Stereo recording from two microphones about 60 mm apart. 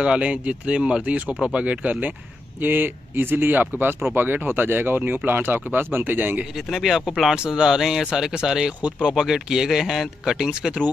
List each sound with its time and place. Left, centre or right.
0.0 s speech: centre
2.6 s speech: right
6.5 s speech: centre